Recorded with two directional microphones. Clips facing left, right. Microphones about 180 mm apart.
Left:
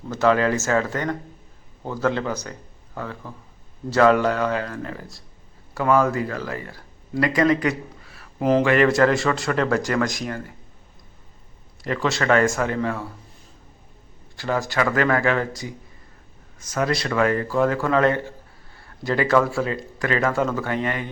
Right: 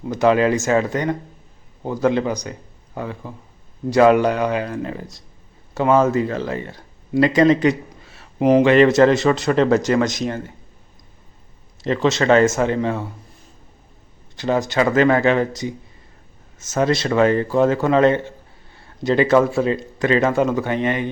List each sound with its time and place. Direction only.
0.1 s a man's voice: 15° right (ahead or behind)
11.8 s speech: 25° right (ahead or behind)
14.3 s speech: 20° right (ahead or behind)